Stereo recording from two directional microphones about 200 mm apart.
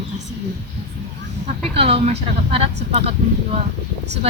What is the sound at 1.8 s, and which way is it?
Speech, 30° right (ahead or behind).